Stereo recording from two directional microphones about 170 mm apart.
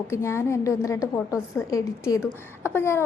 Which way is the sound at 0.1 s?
15° left (ahead or behind).